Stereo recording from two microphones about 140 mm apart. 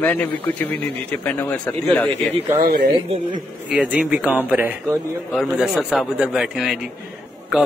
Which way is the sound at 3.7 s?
10° right (ahead or behind).